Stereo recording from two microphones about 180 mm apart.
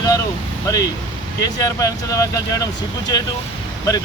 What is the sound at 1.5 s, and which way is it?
Speech, 20° left (ahead or behind).